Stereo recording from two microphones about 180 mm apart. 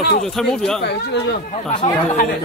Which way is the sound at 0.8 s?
65° left (ahead or behind).